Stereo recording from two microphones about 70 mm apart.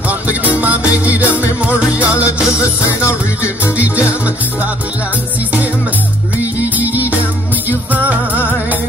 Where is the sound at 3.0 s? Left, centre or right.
Left.